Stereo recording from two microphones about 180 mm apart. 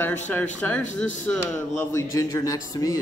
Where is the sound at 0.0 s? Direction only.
10° left (ahead or behind).